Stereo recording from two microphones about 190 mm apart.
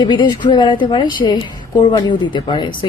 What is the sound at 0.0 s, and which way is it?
A woman's voice, 25° left (ahead or behind).